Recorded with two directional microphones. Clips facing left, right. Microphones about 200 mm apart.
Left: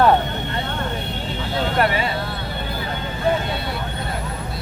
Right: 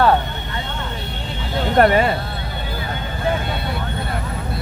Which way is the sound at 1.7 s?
45° right (ahead or behind).